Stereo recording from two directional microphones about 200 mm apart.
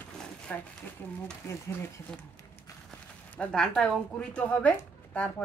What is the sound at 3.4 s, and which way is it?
A woman's voice, 5° left (ahead or behind).